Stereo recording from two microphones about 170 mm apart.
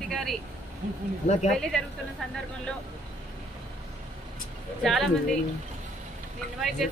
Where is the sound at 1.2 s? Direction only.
40° left (ahead or behind).